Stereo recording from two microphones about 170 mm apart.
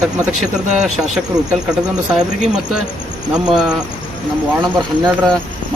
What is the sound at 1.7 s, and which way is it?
Speech, 5° right (ahead or behind).